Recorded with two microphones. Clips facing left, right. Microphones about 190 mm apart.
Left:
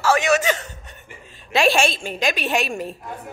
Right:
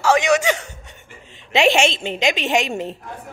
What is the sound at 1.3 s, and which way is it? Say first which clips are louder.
A woman's voice: right 2 dB; 20° right (ahead or behind).